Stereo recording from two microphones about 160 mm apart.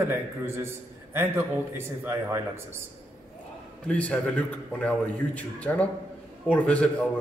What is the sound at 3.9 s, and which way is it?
A man's voice, 10° left (ahead or behind).